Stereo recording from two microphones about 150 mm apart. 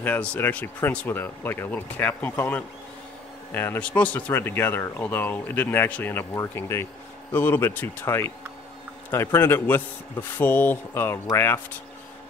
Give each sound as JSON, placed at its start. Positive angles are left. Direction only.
{"t": 0.0, "sound": "speech", "side_deg": 10}